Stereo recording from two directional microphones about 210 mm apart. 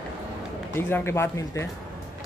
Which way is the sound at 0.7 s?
10° left (ahead or behind).